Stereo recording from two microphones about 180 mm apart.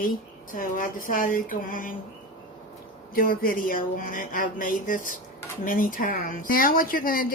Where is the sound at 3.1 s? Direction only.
55° left (ahead or behind).